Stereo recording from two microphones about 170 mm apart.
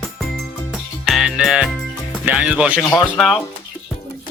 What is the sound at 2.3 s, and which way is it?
Speech, 5° right (ahead or behind).